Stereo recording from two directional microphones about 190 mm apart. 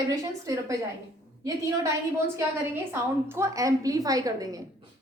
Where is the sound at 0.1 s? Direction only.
15° right (ahead or behind).